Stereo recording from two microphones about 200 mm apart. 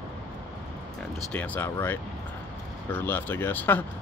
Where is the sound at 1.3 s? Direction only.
5° left (ahead or behind).